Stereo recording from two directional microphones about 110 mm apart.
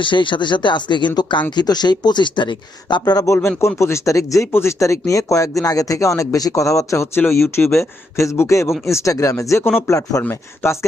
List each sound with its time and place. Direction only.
0.0 s speech: 45° left (ahead or behind)
3.0 s speech: 35° left (ahead or behind)